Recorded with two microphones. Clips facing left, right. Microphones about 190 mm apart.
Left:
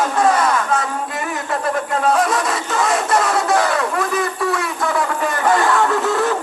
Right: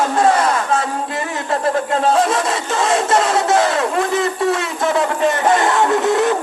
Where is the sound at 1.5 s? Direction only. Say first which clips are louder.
Right 4 dB; 30° right (ahead or behind).